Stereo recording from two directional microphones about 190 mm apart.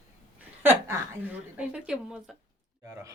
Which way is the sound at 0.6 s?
10° right (ahead or behind).